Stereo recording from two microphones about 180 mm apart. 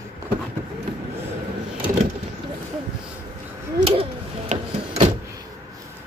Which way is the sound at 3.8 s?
35° right (ahead or behind).